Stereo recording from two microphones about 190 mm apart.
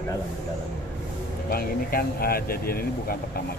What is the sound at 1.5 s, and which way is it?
Speech, 50° left (ahead or behind).